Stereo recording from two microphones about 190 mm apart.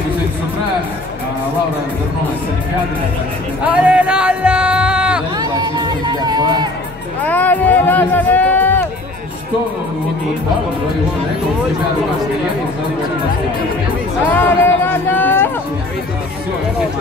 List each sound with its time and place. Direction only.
3.8 s music: 5° right (ahead or behind)
5.4 s crowd: 20° right (ahead or behind)
7.2 s speech: 10° left (ahead or behind)
14.2 s speech: 10° left (ahead or behind)